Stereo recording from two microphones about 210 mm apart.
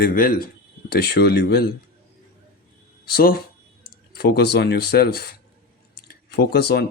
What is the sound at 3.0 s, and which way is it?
Speech, 45° left (ahead or behind).